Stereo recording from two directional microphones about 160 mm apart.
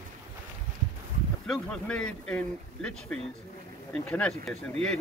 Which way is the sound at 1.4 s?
5° left (ahead or behind).